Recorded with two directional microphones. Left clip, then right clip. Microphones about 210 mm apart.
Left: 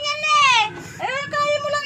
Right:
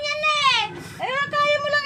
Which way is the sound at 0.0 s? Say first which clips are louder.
Left 3 dB; 10° right (ahead or behind).